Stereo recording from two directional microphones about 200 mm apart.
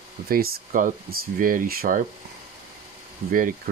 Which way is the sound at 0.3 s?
45° right (ahead or behind).